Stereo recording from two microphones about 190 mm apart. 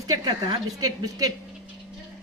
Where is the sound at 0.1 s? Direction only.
20° right (ahead or behind).